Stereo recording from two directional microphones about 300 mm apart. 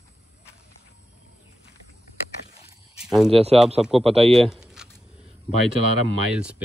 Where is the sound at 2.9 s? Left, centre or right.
Centre.